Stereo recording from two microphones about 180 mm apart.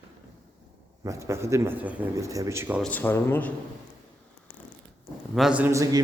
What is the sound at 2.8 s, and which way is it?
Speech, 10° left (ahead or behind).